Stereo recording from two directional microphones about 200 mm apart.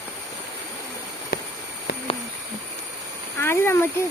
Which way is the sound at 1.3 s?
50° left (ahead or behind).